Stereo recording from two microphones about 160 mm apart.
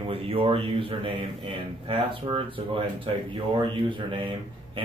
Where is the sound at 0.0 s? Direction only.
35° right (ahead or behind).